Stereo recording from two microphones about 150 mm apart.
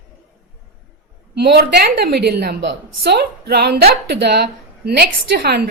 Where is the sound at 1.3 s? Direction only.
90° right.